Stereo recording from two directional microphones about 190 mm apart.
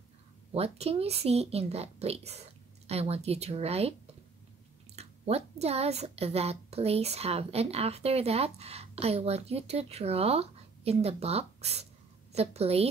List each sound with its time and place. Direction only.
0.6 s a woman's voice: 30° right (ahead or behind)
4.9 s a woman's voice: 35° right (ahead or behind)